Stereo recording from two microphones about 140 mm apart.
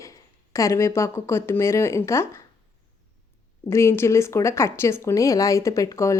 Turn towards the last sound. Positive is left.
turn(degrees=25)  # may be behind; listen again after turning